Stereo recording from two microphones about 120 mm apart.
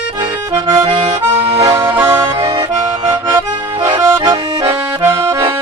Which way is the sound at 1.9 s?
15° right (ahead or behind).